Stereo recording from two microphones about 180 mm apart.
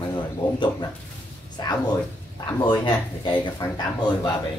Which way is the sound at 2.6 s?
25° left (ahead or behind).